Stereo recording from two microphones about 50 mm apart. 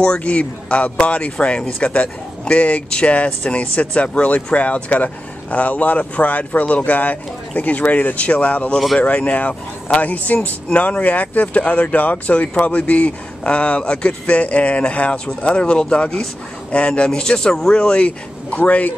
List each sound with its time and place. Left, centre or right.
0.2 s speech: left
8.7 s speech: centre
9.0 s speech: left